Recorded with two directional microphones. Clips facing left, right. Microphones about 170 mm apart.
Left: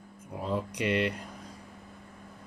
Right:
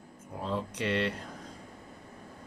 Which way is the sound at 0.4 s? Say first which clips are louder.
Left 2 dB; 15° left (ahead or behind).